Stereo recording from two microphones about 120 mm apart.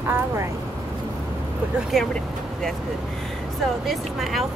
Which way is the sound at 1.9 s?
Centre (ahead or behind).